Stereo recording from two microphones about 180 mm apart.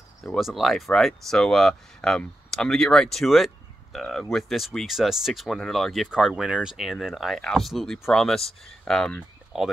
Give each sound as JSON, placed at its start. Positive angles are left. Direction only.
{"t": 0.2, "sound": "speech", "side_deg": 0}